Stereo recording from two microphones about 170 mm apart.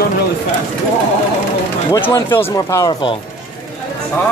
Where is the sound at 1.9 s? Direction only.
20° left (ahead or behind).